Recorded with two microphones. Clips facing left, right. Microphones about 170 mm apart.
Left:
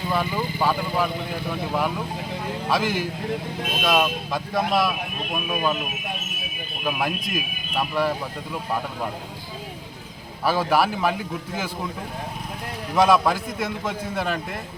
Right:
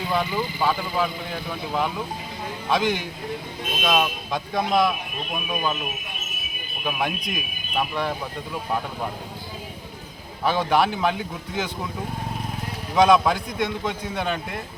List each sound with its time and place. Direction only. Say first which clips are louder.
0.1 s speech: even; 5° left (ahead or behind)
6.8 s speech: left 1 dB; 5° left (ahead or behind)
10.4 s speech: even; 5° left (ahead or behind)
13.0 s speech: right 1 dB; 5° left (ahead or behind)